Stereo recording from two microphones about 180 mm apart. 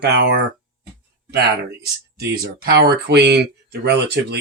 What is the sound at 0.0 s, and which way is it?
Speech, 70° right (ahead or behind).